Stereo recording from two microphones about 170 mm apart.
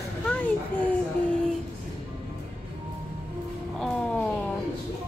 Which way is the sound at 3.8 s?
5° left (ahead or behind).